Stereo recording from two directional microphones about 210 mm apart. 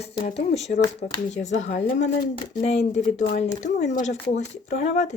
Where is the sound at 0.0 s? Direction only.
35° left (ahead or behind).